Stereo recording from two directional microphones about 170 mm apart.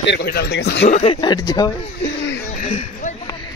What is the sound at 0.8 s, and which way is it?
Speech, 40° left (ahead or behind).